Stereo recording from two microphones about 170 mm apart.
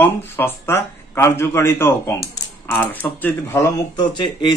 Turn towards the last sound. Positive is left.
turn(degrees=30)  # may be behind; listen again after turning